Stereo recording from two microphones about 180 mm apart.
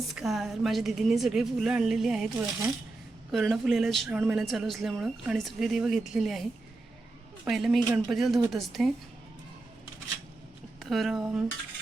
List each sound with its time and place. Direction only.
0.1 s speech: centre (ahead or behind)
10.8 s speech: centre (ahead or behind)